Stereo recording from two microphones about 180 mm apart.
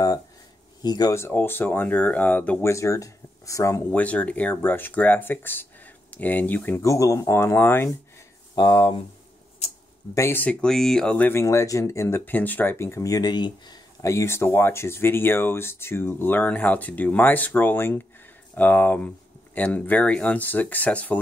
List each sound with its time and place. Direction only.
0.8 s speech: 20° left (ahead or behind)
8.5 s speech: 25° left (ahead or behind)
10.1 s speech: 15° left (ahead or behind)